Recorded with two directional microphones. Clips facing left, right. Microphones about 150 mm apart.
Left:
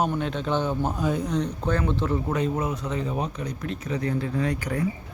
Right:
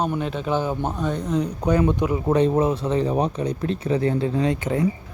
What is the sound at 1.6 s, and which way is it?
Speech, 15° right (ahead or behind).